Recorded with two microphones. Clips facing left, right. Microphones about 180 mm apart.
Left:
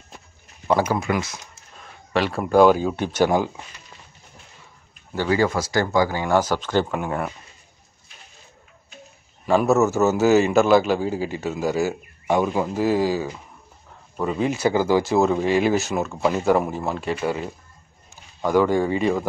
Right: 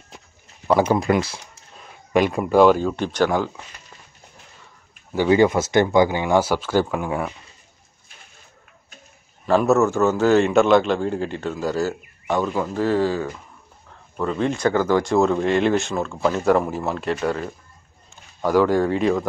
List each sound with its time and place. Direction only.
0.9 s speech: 35° right (ahead or behind)
2.1 s speech: 15° right (ahead or behind)
2.4 s a man's voice: centre (ahead or behind)
5.1 s speech: 15° right (ahead or behind); by 7.3 s centre (ahead or behind)
9.5 s a man's voice: centre (ahead or behind)